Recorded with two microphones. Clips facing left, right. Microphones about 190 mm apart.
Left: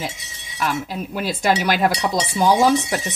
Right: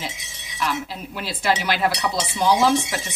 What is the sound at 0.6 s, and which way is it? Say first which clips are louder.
Speech: left 3 dB; 45° left (ahead or behind).